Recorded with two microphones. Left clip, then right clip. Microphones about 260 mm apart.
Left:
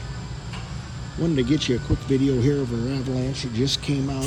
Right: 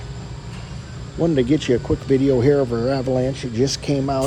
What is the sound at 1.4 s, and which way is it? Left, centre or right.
Speech, centre.